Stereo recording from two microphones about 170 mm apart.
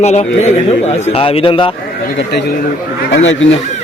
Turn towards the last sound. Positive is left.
turn(degrees=90)